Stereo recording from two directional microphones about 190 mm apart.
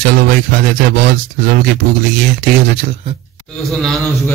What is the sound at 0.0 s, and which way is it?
Speech, 55° right (ahead or behind).